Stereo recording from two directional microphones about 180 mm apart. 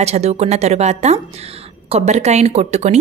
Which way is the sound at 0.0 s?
35° right (ahead or behind).